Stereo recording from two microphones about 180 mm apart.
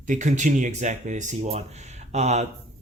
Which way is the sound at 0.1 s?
45° right (ahead or behind).